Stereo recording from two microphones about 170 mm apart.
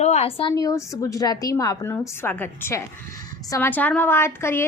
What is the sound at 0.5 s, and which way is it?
A woman's voice, 20° left (ahead or behind).